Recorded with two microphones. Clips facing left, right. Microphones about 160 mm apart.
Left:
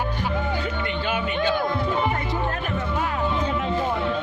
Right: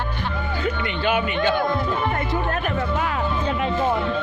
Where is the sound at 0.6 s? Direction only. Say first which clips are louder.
Right 3 dB; 70° right (ahead or behind).